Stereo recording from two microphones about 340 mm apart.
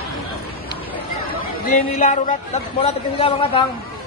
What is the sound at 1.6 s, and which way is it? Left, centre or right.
A man's voice, left.